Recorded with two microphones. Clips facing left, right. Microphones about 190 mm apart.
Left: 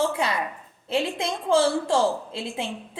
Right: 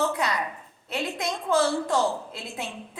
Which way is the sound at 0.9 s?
30° left (ahead or behind).